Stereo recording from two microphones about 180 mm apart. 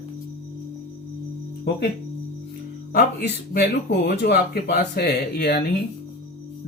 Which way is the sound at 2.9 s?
65° left (ahead or behind).